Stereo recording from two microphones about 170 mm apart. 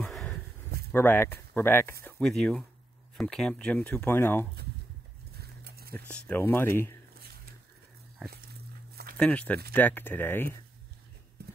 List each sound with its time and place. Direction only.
0.0 s a sound: 5° left (ahead or behind)
0.9 s speech: 10° left (ahead or behind)
5.3 s dog: 70° right (ahead or behind)
6.0 s speech: 5° left (ahead or behind)
9.1 s speech: 10° left (ahead or behind)
11.4 s clip-clop: 70° right (ahead or behind)